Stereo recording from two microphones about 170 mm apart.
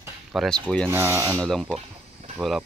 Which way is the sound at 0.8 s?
15° right (ahead or behind).